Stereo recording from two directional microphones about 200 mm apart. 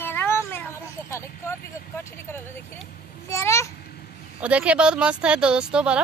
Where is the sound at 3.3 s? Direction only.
15° left (ahead or behind).